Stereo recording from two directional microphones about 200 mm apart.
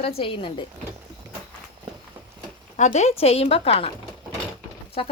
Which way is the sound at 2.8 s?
30° left (ahead or behind).